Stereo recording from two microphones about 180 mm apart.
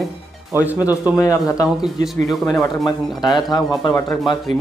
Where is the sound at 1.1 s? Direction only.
15° left (ahead or behind).